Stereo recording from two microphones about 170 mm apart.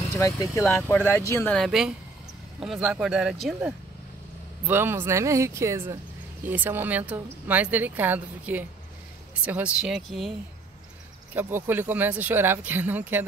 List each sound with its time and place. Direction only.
0.1 s speech: 20° left (ahead or behind)
1.5 s speech: centre (ahead or behind)
4.6 s speech: 15° right (ahead or behind)
11.3 s speech: 10° right (ahead or behind)